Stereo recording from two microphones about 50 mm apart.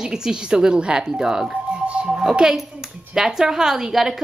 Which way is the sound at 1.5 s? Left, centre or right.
Right.